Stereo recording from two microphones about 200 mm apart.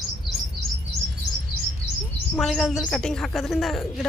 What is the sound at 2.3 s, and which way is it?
A woman's voice, centre (ahead or behind).